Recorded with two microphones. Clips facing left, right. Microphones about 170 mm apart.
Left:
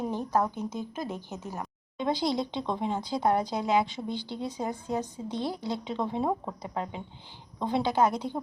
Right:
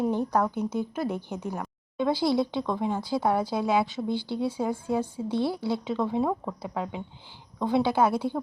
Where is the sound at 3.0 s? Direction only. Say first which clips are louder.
Even; 5° right (ahead or behind).